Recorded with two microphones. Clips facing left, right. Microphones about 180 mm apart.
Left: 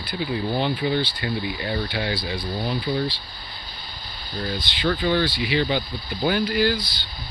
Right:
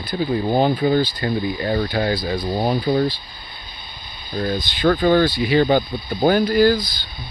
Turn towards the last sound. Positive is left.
turn(degrees=-45)  # may be behind; listen again after turning